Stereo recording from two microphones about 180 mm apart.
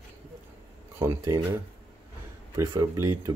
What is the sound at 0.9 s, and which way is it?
Speech, 20° right (ahead or behind).